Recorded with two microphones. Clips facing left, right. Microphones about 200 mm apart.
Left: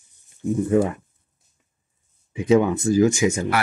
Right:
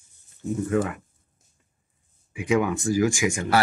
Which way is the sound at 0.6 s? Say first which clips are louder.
Left 5 dB; 25° left (ahead or behind).